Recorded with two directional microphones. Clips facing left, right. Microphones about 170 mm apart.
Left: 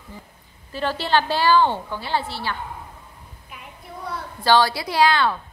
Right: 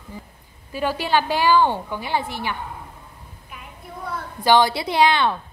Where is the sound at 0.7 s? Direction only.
10° right (ahead or behind).